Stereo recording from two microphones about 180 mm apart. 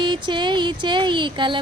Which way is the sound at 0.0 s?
25° right (ahead or behind).